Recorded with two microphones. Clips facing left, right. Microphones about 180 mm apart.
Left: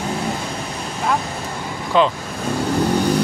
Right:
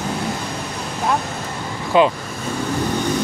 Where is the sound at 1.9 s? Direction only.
10° right (ahead or behind).